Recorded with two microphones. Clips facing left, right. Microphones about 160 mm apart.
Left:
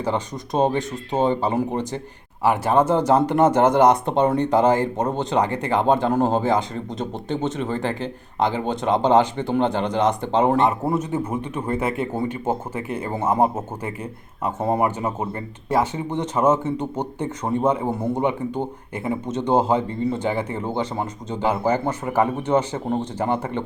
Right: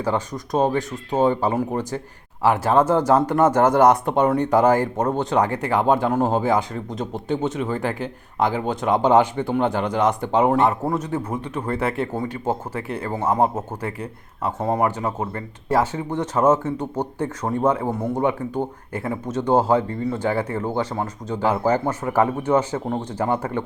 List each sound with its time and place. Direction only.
0.0 s speech: 20° left (ahead or behind)
5.4 s speech: 5° right (ahead or behind)
10.7 s speech: 10° left (ahead or behind)
22.4 s speech: 10° right (ahead or behind)
23.2 s speech: 15° left (ahead or behind)